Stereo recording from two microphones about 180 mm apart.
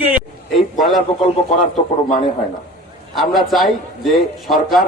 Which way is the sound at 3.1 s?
Centre (ahead or behind).